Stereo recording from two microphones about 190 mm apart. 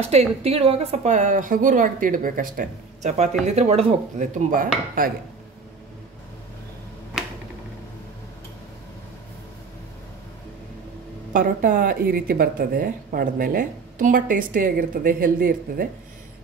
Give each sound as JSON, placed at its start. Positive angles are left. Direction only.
{"t": 0.4, "sound": "speech", "side_deg": -30}
{"t": 4.5, "sound": "speech", "side_deg": -50}
{"t": 11.3, "sound": "speech", "side_deg": -45}